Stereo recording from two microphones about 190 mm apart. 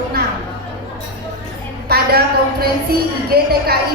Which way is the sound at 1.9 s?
55° right (ahead or behind).